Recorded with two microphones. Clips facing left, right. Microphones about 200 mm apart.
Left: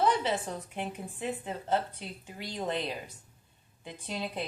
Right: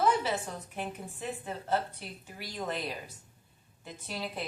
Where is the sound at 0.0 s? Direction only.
20° left (ahead or behind).